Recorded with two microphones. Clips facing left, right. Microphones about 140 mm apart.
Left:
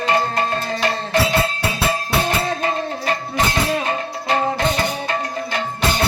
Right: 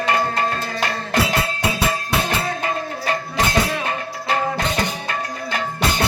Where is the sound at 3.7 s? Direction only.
25° left (ahead or behind).